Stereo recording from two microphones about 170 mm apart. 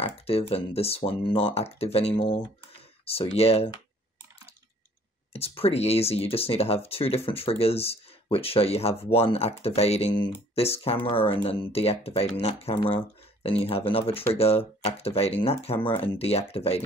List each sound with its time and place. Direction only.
0.0 s speech: 35° left (ahead or behind)
5.3 s speech: 35° left (ahead or behind)